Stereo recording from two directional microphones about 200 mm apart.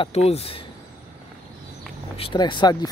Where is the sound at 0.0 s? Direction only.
30° left (ahead or behind).